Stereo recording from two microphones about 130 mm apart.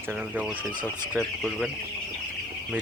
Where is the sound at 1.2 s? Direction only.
5° left (ahead or behind).